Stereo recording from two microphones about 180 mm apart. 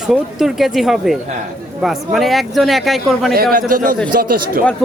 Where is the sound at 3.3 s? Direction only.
55° right (ahead or behind).